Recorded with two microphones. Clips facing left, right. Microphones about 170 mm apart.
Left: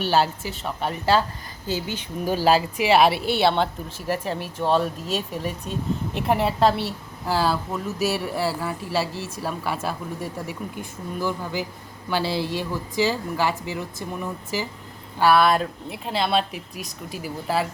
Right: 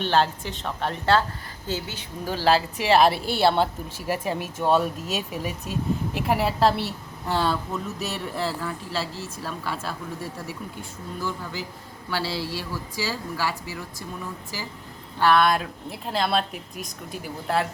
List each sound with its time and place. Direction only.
0.0 s a woman's voice: 5° left (ahead or behind)
2.9 s a woman's voice: 5° left (ahead or behind)
15.2 s speech: 5° left (ahead or behind)